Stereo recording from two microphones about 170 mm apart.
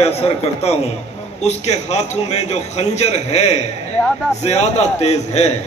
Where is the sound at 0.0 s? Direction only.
35° left (ahead or behind).